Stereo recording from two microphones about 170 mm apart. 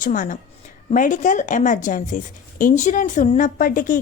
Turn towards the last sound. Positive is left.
turn(degrees=55)  # may be behind; listen again after turning